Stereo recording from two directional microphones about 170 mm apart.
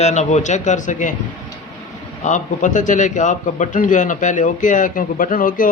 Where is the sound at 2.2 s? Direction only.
45° left (ahead or behind).